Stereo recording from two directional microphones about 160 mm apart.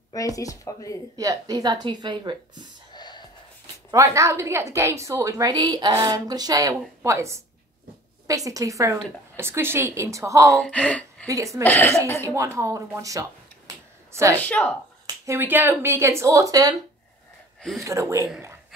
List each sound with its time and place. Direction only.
0.4 s speech: 20° left (ahead or behind)
1.1 s a woman's voice: 20° right (ahead or behind)
2.9 s a sound: 25° left (ahead or behind)
3.9 s a woman's voice: 20° right (ahead or behind)
10.6 s speech: 5° left (ahead or behind)
11.2 s a woman's voice: 20° right (ahead or behind)
11.6 s speech: 10° left (ahead or behind)
12.3 s speech: 15° right (ahead or behind)
14.4 s speech: 10° left (ahead or behind)
15.2 s speech: 15° right (ahead or behind)
17.6 s speech: centre (ahead or behind)
17.8 s a woman's voice: 20° right (ahead or behind)